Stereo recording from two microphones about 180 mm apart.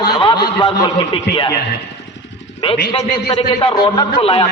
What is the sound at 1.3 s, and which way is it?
Speech, 60° left (ahead or behind).